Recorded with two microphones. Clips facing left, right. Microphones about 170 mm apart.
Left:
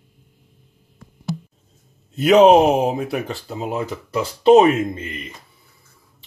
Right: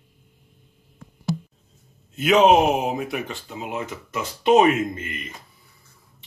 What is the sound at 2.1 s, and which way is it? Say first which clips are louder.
Speech: left 5 dB; 35° left (ahead or behind).